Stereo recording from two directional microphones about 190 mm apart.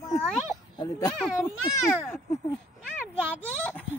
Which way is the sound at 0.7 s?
20° left (ahead or behind).